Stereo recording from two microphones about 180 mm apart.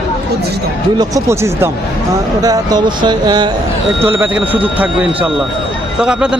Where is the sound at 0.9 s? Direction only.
20° right (ahead or behind).